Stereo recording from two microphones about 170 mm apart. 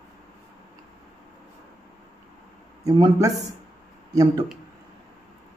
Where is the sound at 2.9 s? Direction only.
20° right (ahead or behind).